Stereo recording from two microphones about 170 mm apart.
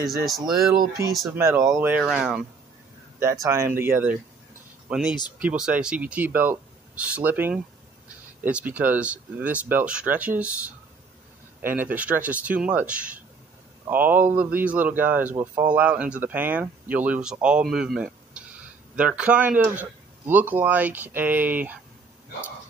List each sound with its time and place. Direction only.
0.5 s a man's voice: 20° right (ahead or behind); by 2.4 s 5° right (ahead or behind)
3.2 s a man's voice: 15° right (ahead or behind)
11.6 s a man's voice: 10° right (ahead or behind)